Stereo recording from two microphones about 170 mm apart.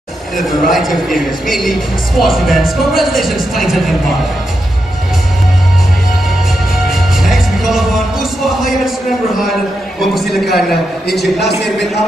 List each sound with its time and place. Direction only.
0.4 s a woman's voice: centre (ahead or behind)
6.9 s music: centre (ahead or behind)
10.2 s a woman's voice: centre (ahead or behind)
11.1 s a man's voice: 75° left (ahead or behind)